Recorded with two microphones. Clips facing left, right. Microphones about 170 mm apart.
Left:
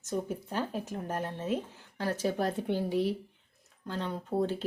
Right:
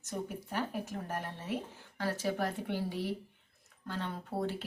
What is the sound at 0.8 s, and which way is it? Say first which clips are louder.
Speech: left 4 dB; 20° left (ahead or behind).